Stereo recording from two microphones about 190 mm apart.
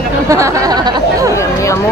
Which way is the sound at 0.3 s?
15° right (ahead or behind).